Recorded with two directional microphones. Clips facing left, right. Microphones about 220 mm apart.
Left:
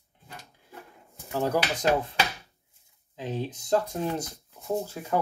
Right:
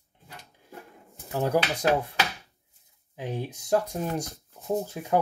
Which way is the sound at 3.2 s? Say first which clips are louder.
Left 1 dB; 15° right (ahead or behind).